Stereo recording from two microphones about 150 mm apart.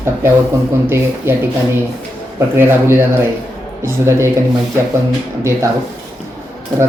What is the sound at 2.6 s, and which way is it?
Speech, 15° right (ahead or behind).